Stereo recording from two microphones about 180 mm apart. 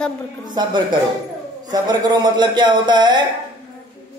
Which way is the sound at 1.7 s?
20° right (ahead or behind).